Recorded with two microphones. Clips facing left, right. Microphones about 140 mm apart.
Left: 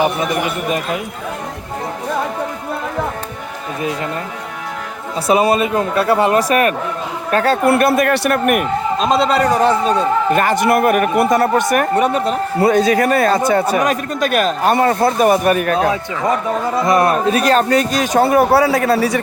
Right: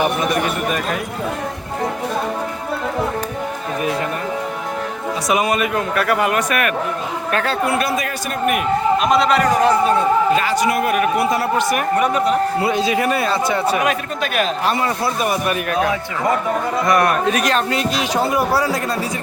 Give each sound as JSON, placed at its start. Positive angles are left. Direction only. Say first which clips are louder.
{"t": 5.3, "sound": "speech", "louder": "left 5 dB", "side_deg": 30}
{"t": 7.7, "sound": "speech", "louder": "left 7 dB", "side_deg": 60}
{"t": 9.0, "sound": "speech", "louder": "left 5 dB", "side_deg": 25}
{"t": 10.3, "sound": "speech", "louder": "left 3 dB", "side_deg": 55}
{"t": 11.9, "sound": "speech", "louder": "left 2 dB", "side_deg": 30}
{"t": 12.6, "sound": "speech", "louder": "left 5 dB", "side_deg": 45}